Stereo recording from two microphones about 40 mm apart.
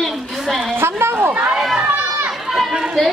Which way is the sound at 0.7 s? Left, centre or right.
Right.